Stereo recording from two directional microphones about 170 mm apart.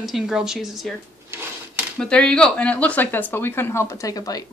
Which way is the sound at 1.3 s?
15° right (ahead or behind).